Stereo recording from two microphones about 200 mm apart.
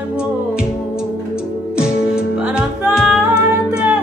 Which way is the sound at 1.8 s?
5° right (ahead or behind).